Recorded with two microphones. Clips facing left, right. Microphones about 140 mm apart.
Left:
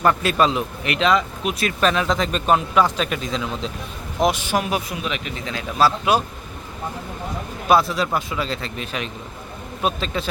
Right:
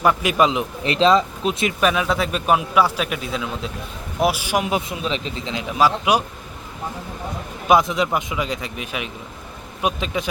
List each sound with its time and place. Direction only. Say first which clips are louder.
0.0 s a man's voice: right 1 dB; 10° right (ahead or behind)
0.9 s speech: right 4 dB; 30° right (ahead or behind)
1.8 s a man's voice: left 1 dB; 10° right (ahead or behind)
7.7 s a man's voice: right 1 dB; 20° right (ahead or behind)